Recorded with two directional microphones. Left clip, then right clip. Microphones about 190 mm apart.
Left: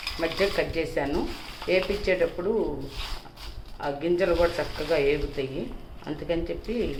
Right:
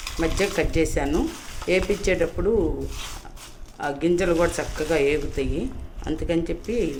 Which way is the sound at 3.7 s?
70° right (ahead or behind).